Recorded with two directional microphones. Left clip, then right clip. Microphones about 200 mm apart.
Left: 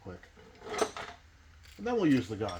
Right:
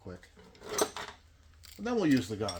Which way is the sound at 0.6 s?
45° right (ahead or behind).